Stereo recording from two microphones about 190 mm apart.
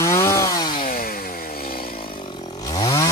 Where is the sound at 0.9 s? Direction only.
50° left (ahead or behind).